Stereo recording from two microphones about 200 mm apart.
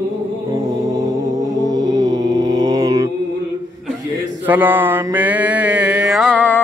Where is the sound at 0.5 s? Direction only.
15° right (ahead or behind).